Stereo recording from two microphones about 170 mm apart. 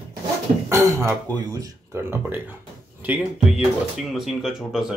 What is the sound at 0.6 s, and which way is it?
Speech, 15° right (ahead or behind).